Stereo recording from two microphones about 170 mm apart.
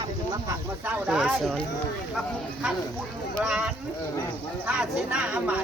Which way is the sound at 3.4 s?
5° right (ahead or behind).